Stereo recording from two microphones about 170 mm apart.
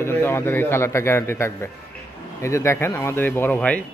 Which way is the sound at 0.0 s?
15° left (ahead or behind).